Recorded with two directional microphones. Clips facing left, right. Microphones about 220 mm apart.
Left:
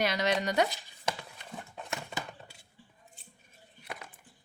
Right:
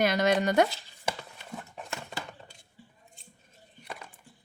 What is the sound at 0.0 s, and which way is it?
Speech, 50° right (ahead or behind).